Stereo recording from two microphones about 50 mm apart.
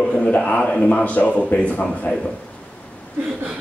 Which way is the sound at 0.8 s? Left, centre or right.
Left.